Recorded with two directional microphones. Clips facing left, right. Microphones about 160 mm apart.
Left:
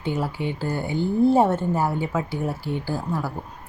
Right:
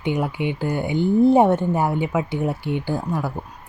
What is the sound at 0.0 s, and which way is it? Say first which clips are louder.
Speech: right 3 dB; 15° right (ahead or behind).